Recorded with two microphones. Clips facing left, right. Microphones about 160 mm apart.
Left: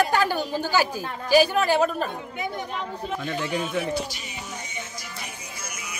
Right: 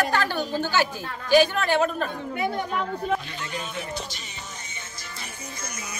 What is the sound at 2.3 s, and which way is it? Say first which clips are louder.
Speech: right 4 dB; 60° right (ahead or behind).